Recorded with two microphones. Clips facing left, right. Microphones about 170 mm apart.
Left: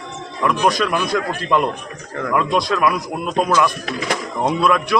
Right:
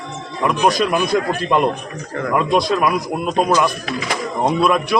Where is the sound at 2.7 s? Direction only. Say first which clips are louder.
Right 1 dB; 10° right (ahead or behind).